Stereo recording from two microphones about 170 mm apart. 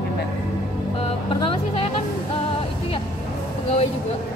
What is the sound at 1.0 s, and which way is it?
Speech, 30° left (ahead or behind).